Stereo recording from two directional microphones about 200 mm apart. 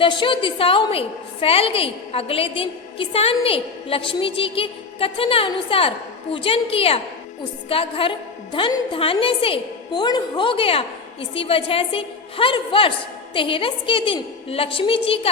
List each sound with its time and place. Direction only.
0.0 s a woman's voice: 25° left (ahead or behind)